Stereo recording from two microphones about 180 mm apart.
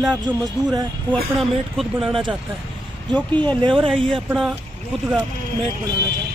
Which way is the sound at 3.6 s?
30° right (ahead or behind).